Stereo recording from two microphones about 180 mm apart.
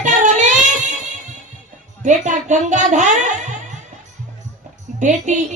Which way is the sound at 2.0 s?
45° right (ahead or behind).